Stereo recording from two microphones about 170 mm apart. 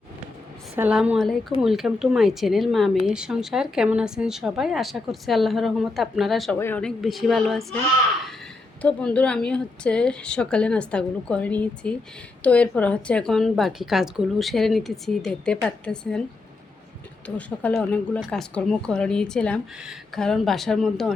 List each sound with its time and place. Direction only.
0.8 s a woman's voice: 5° right (ahead or behind)
6.6 s a woman's voice: 10° left (ahead or behind)
8.8 s a woman's voice: 5° left (ahead or behind)
17.2 s a woman's voice: 10° left (ahead or behind)